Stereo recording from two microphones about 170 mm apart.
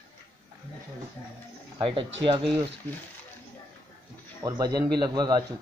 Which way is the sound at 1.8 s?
30° right (ahead or behind).